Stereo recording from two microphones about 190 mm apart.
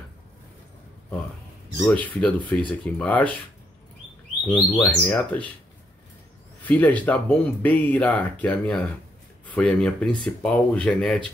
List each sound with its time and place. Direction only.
1.9 s speech: 5° left (ahead or behind)
4.5 s speech: 10° left (ahead or behind)
6.6 s speech: 10° left (ahead or behind)